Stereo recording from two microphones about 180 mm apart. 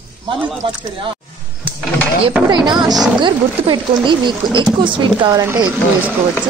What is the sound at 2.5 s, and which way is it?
Speech, 25° right (ahead or behind).